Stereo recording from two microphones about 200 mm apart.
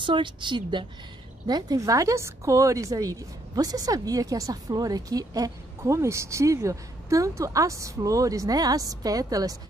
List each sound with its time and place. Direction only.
0.0 s a woman's voice: 25° right (ahead or behind)